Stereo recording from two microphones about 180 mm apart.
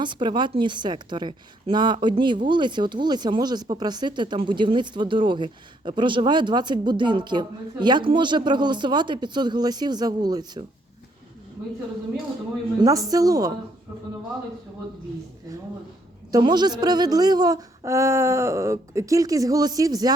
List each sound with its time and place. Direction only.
0.0 s a woman's voice: 25° right (ahead or behind)
12.8 s a woman's voice: 20° right (ahead or behind)
16.3 s a woman's voice: 25° right (ahead or behind)